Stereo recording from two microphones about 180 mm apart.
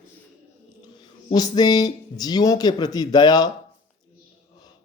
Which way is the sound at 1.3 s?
20° left (ahead or behind).